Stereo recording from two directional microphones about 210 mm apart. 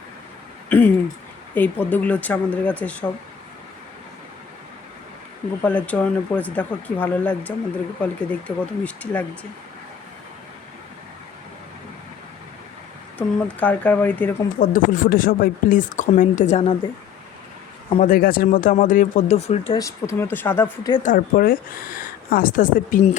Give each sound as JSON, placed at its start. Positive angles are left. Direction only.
{"t": 0.7, "sound": "speech", "side_deg": 10}
{"t": 5.6, "sound": "speech", "side_deg": 5}
{"t": 13.1, "sound": "speech", "side_deg": 5}
{"t": 14.6, "sound": "a woman's voice", "side_deg": 40}
{"t": 17.8, "sound": "a man's voice", "side_deg": 25}
{"t": 18.1, "sound": "a woman's voice", "side_deg": 45}
{"t": 19.8, "sound": "speech", "side_deg": 10}
{"t": 21.0, "sound": "a woman's voice", "side_deg": 40}